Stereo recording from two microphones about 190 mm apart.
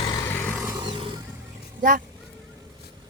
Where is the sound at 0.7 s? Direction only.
25° right (ahead or behind).